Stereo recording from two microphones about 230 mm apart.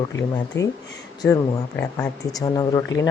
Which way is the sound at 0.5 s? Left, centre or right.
Left.